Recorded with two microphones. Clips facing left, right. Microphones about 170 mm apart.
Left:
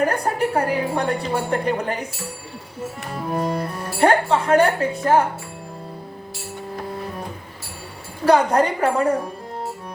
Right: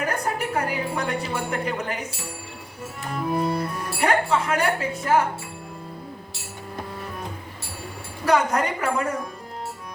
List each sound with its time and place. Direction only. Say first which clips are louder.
0.0 s a woman's voice: left 6 dB; 35° left (ahead or behind)
3.3 s speech: left 2 dB; 35° left (ahead or behind)
8.3 s speech: left 5 dB; 30° left (ahead or behind)